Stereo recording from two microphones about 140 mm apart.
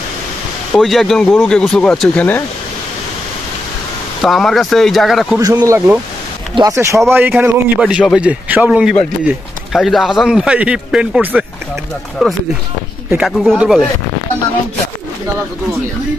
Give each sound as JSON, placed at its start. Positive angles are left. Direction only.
{"t": 0.7, "sound": "a man's voice", "side_deg": 0}
{"t": 4.2, "sound": "a man's voice", "side_deg": 5}
{"t": 5.4, "sound": "a man's voice", "side_deg": -25}